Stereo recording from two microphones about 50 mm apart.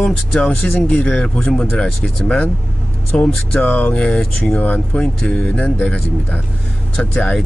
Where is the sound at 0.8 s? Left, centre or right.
Left.